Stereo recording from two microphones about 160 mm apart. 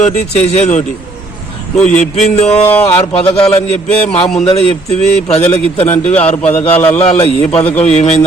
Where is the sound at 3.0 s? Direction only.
40° left (ahead or behind).